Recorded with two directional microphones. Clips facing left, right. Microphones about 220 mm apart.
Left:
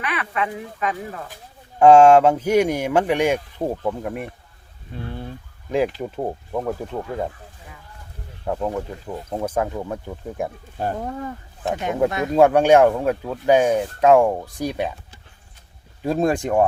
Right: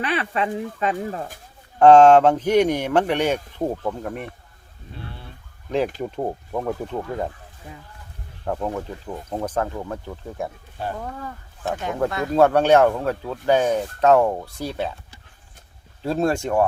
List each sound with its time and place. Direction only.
0.0 s speech: 30° right (ahead or behind)
1.8 s speech: 10° left (ahead or behind)
6.0 s speech: centre (ahead or behind)
8.4 s speech: 5° left (ahead or behind)
16.0 s speech: 15° left (ahead or behind)